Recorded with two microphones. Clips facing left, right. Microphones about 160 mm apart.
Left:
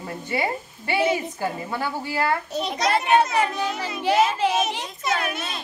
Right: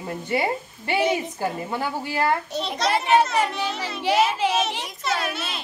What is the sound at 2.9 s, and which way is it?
Child singing, 5° right (ahead or behind).